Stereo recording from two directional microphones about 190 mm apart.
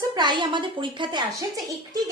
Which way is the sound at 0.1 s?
25° right (ahead or behind).